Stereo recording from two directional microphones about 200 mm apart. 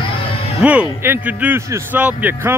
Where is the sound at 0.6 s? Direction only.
5° right (ahead or behind).